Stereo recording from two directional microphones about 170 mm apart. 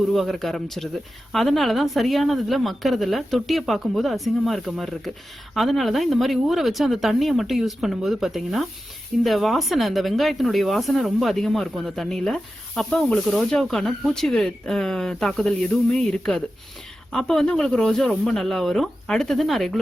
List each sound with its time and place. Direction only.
0.1 s speech: centre (ahead or behind)